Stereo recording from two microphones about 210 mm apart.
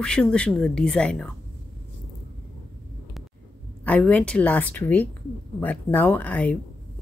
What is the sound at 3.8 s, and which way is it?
A woman's voice, 5° left (ahead or behind).